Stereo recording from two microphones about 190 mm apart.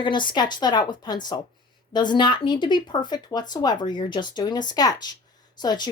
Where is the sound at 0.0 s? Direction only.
25° left (ahead or behind).